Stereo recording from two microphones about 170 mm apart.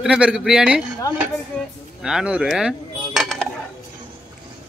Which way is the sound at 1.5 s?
5° left (ahead or behind).